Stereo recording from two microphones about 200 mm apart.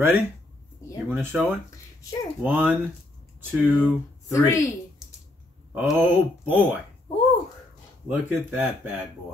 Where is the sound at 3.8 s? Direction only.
15° left (ahead or behind).